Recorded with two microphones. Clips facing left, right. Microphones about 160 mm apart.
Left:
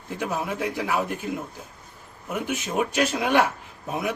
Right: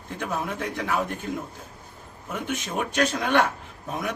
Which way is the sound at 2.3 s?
10° left (ahead or behind).